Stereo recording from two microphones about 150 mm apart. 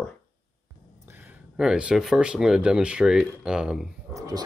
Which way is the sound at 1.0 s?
15° right (ahead or behind).